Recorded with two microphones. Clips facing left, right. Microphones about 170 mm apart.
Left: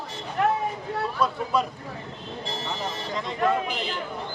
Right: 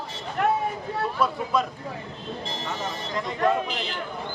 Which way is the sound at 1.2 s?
Centre (ahead or behind).